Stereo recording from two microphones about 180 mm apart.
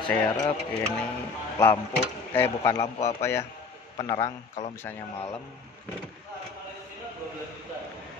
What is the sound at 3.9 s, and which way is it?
Speech, 25° left (ahead or behind).